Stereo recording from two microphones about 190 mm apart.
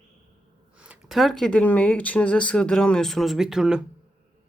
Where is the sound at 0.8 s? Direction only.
5° right (ahead or behind).